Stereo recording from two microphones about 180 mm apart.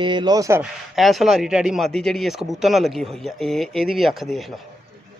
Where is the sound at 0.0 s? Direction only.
25° right (ahead or behind).